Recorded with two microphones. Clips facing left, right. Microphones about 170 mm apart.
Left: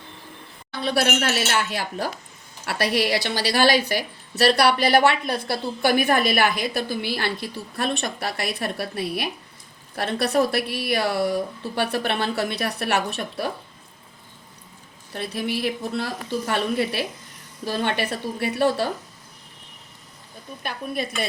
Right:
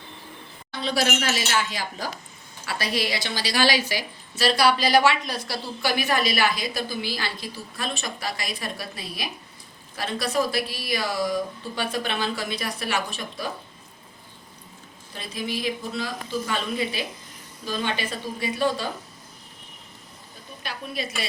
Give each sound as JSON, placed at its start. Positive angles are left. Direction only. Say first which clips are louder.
{"t": 0.8, "sound": "a woman's voice", "louder": "left 3 dB", "side_deg": 60}
{"t": 15.1, "sound": "a woman's voice", "louder": "left 4 dB", "side_deg": 65}
{"t": 20.6, "sound": "a woman's voice", "louder": "left 4 dB", "side_deg": 55}